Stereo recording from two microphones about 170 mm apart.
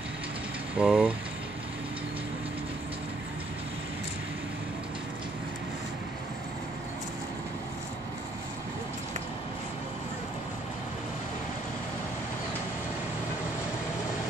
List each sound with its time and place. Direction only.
0.7 s speech: 5° right (ahead or behind)